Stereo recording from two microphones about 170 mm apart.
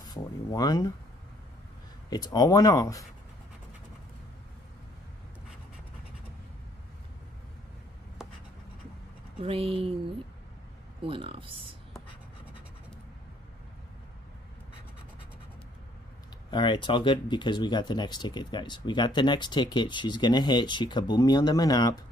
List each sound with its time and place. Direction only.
0.1 s speech: 20° left (ahead or behind)
2.0 s speech: 25° left (ahead or behind)
8.2 s writing: 5° right (ahead or behind)
9.4 s speech: 35° right (ahead or behind)
16.4 s speech: 25° left (ahead or behind)